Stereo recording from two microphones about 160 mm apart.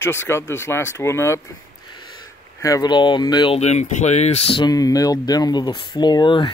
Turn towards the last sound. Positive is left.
turn(degrees=25)  # may be behind; listen again after turning